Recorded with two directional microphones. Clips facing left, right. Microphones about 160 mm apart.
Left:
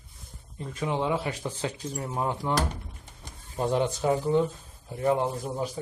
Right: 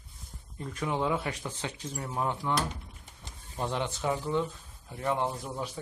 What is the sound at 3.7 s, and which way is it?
Speech, 35° left (ahead or behind).